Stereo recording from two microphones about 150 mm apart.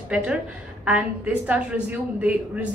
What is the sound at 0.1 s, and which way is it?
A woman's voice, 10° right (ahead or behind).